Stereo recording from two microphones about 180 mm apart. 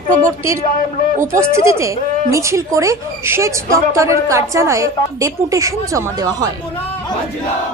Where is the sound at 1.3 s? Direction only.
15° right (ahead or behind).